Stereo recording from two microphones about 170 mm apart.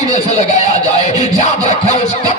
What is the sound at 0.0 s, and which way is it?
Speech, 45° left (ahead or behind).